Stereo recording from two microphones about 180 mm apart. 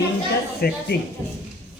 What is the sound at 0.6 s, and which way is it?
Speech, 60° left (ahead or behind).